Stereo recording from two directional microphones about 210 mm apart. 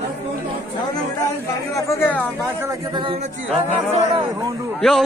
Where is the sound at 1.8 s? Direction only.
15° left (ahead or behind).